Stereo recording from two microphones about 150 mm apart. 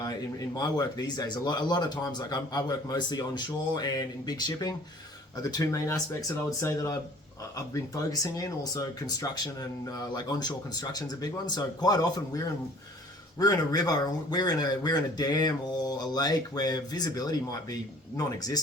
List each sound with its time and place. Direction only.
0.5 s speech: 25° left (ahead or behind)
13.4 s speech: 25° left (ahead or behind)